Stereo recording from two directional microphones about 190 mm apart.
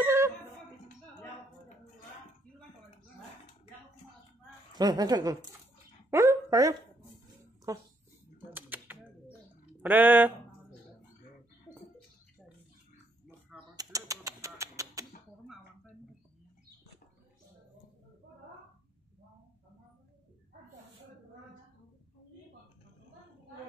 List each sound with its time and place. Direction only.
0.0 s a sound: 10° right (ahead or behind)
4.7 s a woman's voice: 20° right (ahead or behind)
6.0 s a sound: 15° right (ahead or behind)
7.7 s speech: 20° right (ahead or behind)
8.5 s typewriter: 10° right (ahead or behind)
9.8 s speech: 10° right (ahead or behind)
13.7 s typing: 20° right (ahead or behind)
14.2 s music: 15° right (ahead or behind)